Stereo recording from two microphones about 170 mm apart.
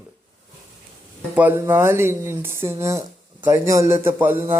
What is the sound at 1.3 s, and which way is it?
Speech, 10° right (ahead or behind).